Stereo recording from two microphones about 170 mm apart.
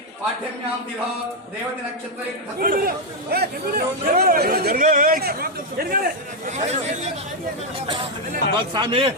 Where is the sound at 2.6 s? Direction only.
55° right (ahead or behind).